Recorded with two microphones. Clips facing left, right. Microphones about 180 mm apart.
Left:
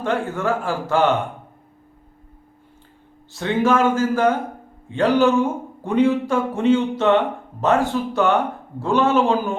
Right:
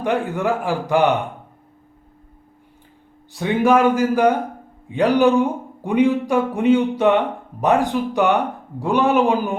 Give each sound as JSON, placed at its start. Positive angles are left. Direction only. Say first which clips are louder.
{"t": 0.0, "sound": "speech", "louder": "right 2 dB", "side_deg": -15}
{"t": 3.3, "sound": "speech", "louder": "right 2 dB", "side_deg": -15}